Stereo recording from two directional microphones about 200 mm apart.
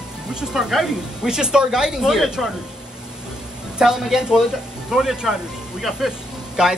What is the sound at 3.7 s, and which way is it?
Speech, 5° right (ahead or behind).